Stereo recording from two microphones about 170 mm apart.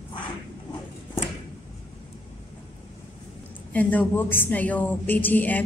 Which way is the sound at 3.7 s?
10° left (ahead or behind).